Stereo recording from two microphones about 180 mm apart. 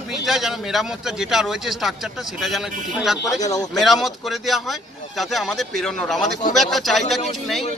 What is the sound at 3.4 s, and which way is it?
Speech, 20° left (ahead or behind).